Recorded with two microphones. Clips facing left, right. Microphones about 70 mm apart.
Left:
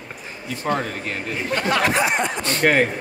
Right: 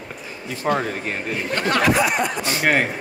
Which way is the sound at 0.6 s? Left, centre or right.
Centre.